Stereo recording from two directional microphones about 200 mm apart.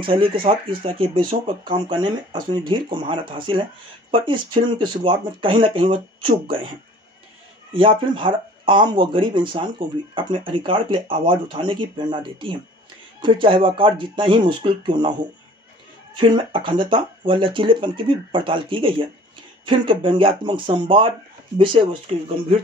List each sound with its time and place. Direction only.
0.0 s speech: 25° right (ahead or behind)
7.7 s speech: 25° right (ahead or behind)
16.2 s speech: 25° right (ahead or behind)